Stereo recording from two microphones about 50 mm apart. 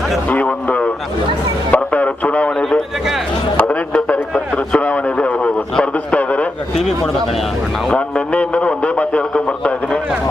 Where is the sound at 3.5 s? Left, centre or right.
Left.